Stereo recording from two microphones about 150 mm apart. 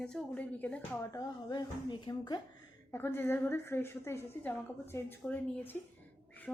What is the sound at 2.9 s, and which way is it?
A woman's voice, 15° left (ahead or behind).